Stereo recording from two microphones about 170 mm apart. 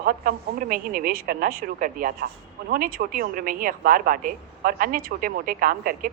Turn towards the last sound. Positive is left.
turn(degrees=-55)  # may be behind; listen again after turning